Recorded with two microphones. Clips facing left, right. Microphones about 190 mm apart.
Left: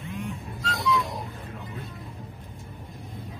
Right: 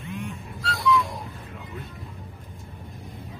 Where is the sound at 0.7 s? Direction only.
20° left (ahead or behind).